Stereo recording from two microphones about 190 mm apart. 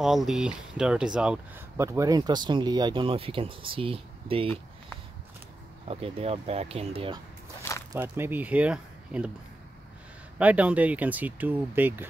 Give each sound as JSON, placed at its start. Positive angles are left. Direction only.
{"t": 0.0, "sound": "speech", "side_deg": 0}
{"t": 1.9, "sound": "speech", "side_deg": -20}
{"t": 5.9, "sound": "speech", "side_deg": -30}
{"t": 7.9, "sound": "speech", "side_deg": -10}
{"t": 10.4, "sound": "speech", "side_deg": -5}